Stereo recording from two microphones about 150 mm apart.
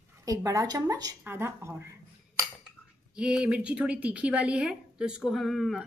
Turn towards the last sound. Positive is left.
turn(degrees=0)  # may be behind; listen again after turning